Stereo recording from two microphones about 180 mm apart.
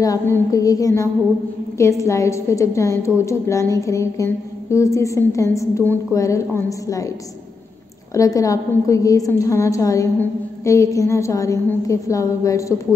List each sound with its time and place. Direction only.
0.0 s a sound: 20° left (ahead or behind)
1.8 s a woman's voice: 15° left (ahead or behind)
8.1 s a woman's voice: 20° left (ahead or behind)